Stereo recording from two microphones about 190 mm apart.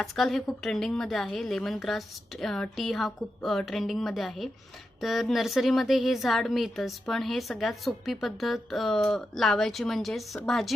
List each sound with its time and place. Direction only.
0.0 s speech: centre (ahead or behind)